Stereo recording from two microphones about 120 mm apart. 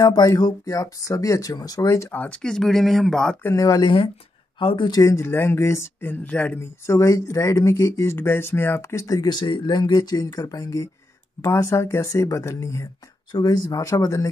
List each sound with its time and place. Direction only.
0.0 s speech: 30° left (ahead or behind); by 3.3 s 5° left (ahead or behind)
3.5 s speech: 30° left (ahead or behind)
4.6 s speech: 45° left (ahead or behind)
5.0 s speech: 25° left (ahead or behind)